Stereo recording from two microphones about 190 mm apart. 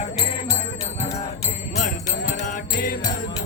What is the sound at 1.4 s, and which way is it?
Music, 35° left (ahead or behind).